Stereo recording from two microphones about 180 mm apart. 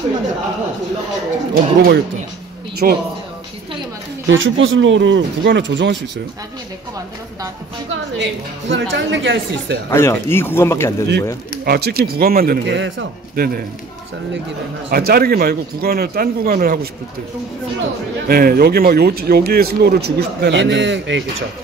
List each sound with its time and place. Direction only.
1.5 s speech: 60° right (ahead or behind)
2.8 s speech: 50° right (ahead or behind)
4.3 s speech: 90° right
8.2 s speech: 80° right
9.8 s speech: 15° left (ahead or behind)
11.6 s speech: 60° right (ahead or behind); by 12.9 s 80° right
13.4 s speech: 60° right (ahead or behind)
14.9 s speech: 55° right (ahead or behind)
18.3 s speech: 55° right (ahead or behind); by 21.2 s 90° right